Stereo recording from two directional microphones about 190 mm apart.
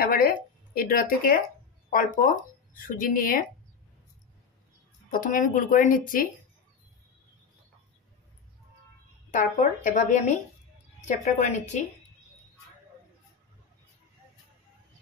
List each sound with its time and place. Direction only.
0.0 s speech: 50° left (ahead or behind)
5.1 s speech: 45° left (ahead or behind)
9.3 s a woman's voice: 40° left (ahead or behind)